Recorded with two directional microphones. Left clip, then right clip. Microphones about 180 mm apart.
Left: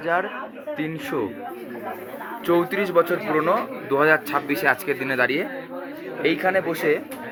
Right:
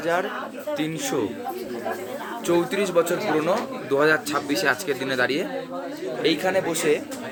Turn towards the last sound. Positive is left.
turn(degrees=25)  # may be behind; listen again after turning